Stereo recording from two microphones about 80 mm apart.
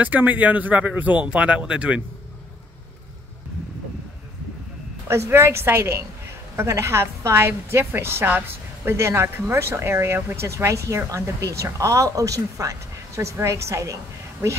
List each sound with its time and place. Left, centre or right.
0.0 s speech: right
5.0 s speech: right